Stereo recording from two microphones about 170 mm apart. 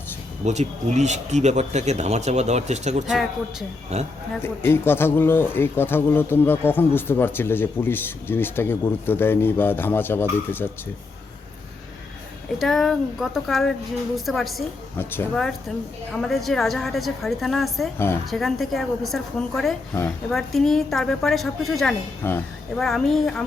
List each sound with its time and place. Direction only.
0.4 s speech: 40° right (ahead or behind)
4.4 s speech: 15° left (ahead or behind)
12.5 s a woman's voice: centre (ahead or behind)
14.9 s speech: 15° left (ahead or behind)
16.1 s a woman's voice: centre (ahead or behind)
17.9 s speech: 15° left (ahead or behind)
18.3 s a woman's voice: centre (ahead or behind)
22.2 s speech: 10° left (ahead or behind)
22.8 s a woman's voice: centre (ahead or behind)